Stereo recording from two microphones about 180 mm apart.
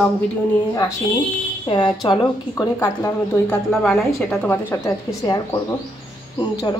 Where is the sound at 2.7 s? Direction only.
15° left (ahead or behind).